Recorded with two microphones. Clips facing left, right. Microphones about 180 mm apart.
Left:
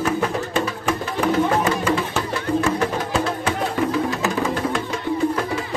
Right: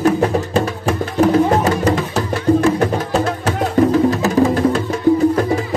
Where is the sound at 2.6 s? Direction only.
40° right (ahead or behind).